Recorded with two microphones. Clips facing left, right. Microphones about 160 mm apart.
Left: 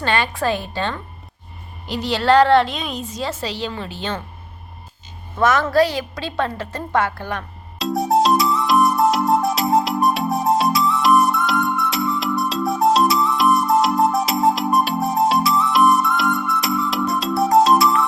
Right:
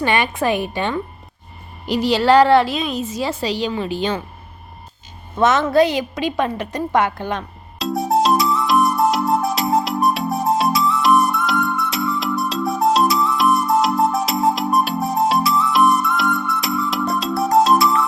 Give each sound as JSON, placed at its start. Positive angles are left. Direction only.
{"t": 0.0, "sound": "a woman's voice", "side_deg": -15}
{"t": 5.4, "sound": "a woman's voice", "side_deg": -25}
{"t": 7.8, "sound": "music", "side_deg": 0}